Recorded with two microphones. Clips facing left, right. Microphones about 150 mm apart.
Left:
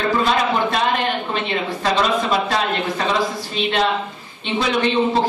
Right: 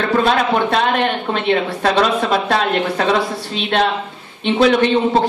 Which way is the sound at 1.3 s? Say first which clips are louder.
Right 5 dB; 60° right (ahead or behind).